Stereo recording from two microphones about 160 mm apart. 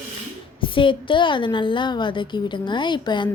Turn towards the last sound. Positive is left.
turn(degrees=30)  # may be behind; listen again after turning